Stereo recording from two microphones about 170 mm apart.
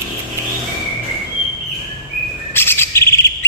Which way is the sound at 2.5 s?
15° left (ahead or behind).